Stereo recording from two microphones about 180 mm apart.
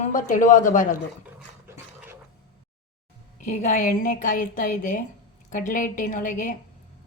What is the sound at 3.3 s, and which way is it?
A woman's voice, 45° left (ahead or behind).